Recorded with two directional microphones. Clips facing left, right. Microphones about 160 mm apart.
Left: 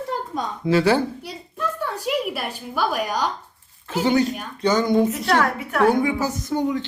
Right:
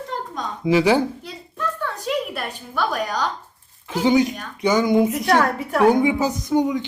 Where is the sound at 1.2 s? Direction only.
10° left (ahead or behind).